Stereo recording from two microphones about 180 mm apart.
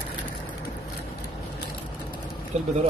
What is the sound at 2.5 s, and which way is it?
Speech, 40° right (ahead or behind).